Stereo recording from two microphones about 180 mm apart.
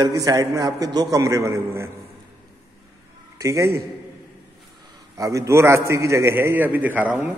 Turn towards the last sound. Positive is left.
turn(degrees=-10)  # may be behind; listen again after turning